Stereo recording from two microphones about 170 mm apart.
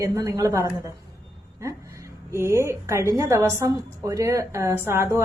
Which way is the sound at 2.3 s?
15° right (ahead or behind).